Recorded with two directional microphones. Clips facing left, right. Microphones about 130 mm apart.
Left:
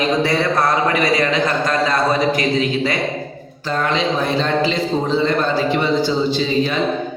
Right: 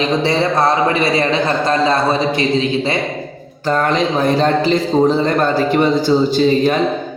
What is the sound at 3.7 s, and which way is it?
A man's voice, 45° right (ahead or behind).